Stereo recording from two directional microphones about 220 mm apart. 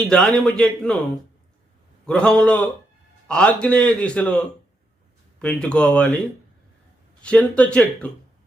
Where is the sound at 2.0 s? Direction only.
5° left (ahead or behind).